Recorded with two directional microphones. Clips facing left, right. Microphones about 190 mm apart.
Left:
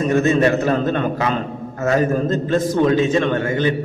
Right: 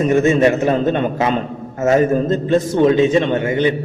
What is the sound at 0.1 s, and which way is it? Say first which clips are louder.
A man's voice: right 1 dB; 20° right (ahead or behind).